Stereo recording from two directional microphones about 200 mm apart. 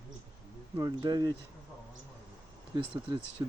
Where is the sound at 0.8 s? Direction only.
20° right (ahead or behind).